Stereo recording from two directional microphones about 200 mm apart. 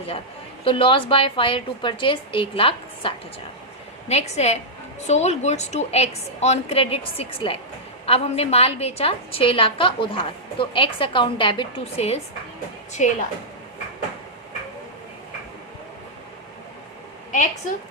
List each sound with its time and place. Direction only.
0.6 s a woman's voice: 25° left (ahead or behind)